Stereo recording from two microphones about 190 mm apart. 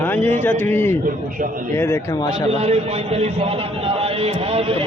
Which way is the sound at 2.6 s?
35° right (ahead or behind).